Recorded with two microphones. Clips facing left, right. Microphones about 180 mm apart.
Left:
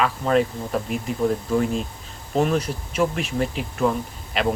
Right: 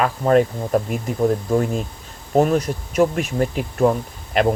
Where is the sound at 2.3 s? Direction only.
40° right (ahead or behind).